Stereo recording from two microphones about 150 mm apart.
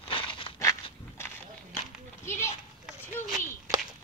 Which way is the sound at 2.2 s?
15° left (ahead or behind).